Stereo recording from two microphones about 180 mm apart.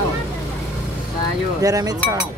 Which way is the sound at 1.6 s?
20° right (ahead or behind).